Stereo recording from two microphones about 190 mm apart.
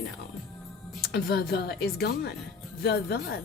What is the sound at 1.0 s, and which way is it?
Speech, 55° left (ahead or behind).